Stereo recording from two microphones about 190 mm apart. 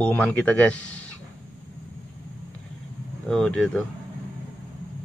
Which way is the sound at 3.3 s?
5° left (ahead or behind).